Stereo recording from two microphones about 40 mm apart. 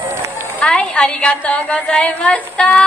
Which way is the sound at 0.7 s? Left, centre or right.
Left.